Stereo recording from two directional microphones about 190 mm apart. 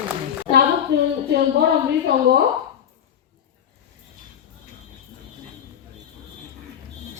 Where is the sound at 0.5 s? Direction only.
35° left (ahead or behind).